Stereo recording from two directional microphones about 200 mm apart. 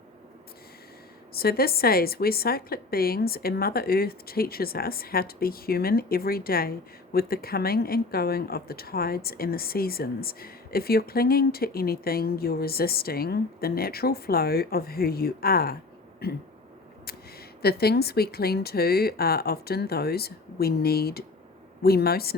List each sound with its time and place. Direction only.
1.3 s a woman's voice: 50° left (ahead or behind)